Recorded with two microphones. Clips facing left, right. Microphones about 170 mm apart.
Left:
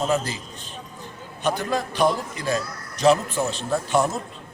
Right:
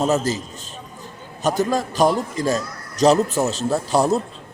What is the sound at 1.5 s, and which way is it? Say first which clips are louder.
Speech: right 4 dB; 40° right (ahead or behind).